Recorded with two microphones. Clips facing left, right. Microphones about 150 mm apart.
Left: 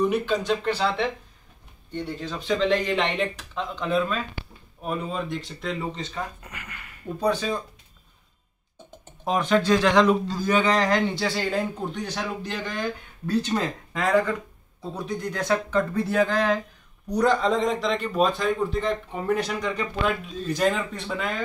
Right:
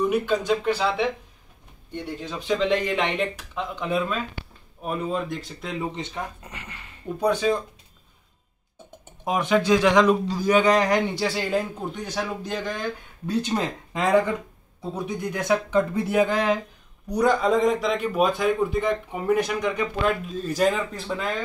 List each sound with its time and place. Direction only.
0.0 s speech: 10° right (ahead or behind)
5.9 s speech: 20° right (ahead or behind)
7.2 s speech: 15° right (ahead or behind)
9.2 s speech: 10° right (ahead or behind)
13.3 s speech: 15° right (ahead or behind); by 21.3 s centre (ahead or behind)